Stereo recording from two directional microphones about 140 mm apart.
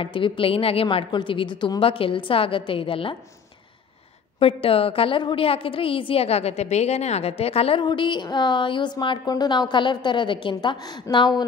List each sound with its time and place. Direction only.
0.0 s a woman's voice: 40° left (ahead or behind)
4.4 s a woman's voice: 40° left (ahead or behind)